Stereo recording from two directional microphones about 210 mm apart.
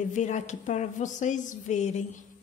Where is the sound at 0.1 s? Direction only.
35° left (ahead or behind).